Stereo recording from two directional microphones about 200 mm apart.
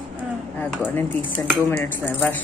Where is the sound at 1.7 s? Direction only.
10° left (ahead or behind).